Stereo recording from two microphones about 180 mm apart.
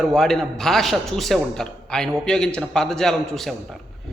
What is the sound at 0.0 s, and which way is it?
A man's voice, centre (ahead or behind).